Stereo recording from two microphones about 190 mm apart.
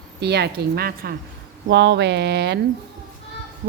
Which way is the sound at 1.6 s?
65° right (ahead or behind).